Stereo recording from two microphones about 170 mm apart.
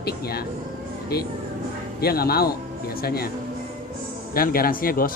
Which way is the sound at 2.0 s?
65° left (ahead or behind).